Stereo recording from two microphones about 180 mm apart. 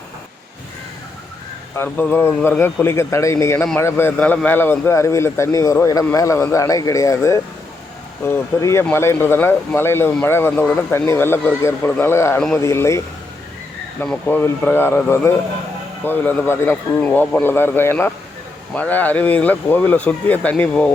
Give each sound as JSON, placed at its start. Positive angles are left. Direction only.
{"t": 1.7, "sound": "speech", "side_deg": 10}
{"t": 14.0, "sound": "speech", "side_deg": 10}